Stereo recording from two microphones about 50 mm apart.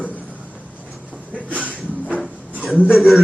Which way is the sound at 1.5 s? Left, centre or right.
Right.